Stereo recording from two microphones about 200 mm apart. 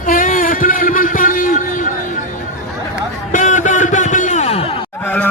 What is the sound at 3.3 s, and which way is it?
Music, 40° left (ahead or behind).